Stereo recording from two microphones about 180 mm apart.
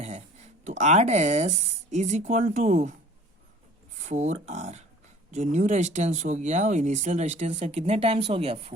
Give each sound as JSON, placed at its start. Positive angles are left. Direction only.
{"t": 0.0, "sound": "a sound", "side_deg": -40}
{"t": 0.8, "sound": "speech", "side_deg": -40}
{"t": 3.9, "sound": "speech", "side_deg": -40}